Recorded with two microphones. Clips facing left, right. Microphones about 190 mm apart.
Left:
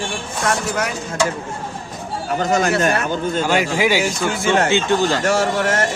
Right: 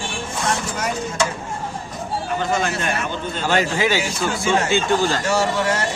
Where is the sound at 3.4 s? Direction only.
15° left (ahead or behind).